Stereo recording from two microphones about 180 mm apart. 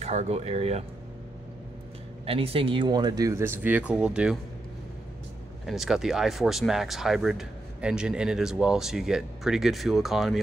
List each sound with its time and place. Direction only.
0.0 s speech: 35° right (ahead or behind)
2.2 s speech: 30° right (ahead or behind); by 4.4 s 5° right (ahead or behind)
5.7 s speech: centre (ahead or behind)